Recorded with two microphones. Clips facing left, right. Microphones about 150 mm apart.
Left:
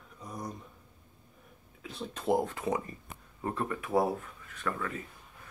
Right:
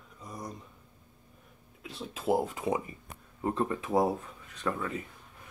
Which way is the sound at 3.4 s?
25° right (ahead or behind).